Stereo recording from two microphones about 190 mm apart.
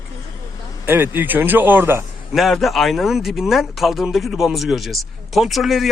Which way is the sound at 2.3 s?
Centre (ahead or behind).